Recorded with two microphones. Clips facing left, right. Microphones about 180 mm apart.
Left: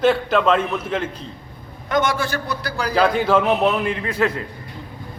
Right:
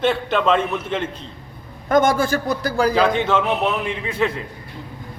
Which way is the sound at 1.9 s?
50° right (ahead or behind).